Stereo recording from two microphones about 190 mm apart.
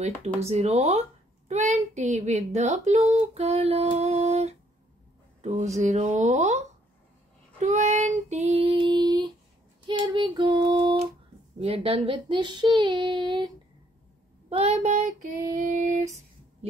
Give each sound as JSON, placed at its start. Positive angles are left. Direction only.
{"t": 0.4, "sound": "speech", "side_deg": -35}
{"t": 7.5, "sound": "child singing", "side_deg": -35}
{"t": 11.6, "sound": "speech", "side_deg": -30}
{"t": 14.5, "sound": "speech", "side_deg": -35}